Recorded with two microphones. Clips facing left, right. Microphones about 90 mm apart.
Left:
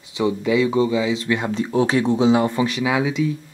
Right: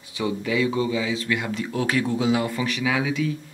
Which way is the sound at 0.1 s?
20° left (ahead or behind).